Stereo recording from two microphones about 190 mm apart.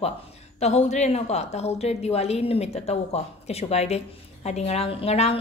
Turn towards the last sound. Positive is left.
turn(degrees=35)  # may be behind; listen again after turning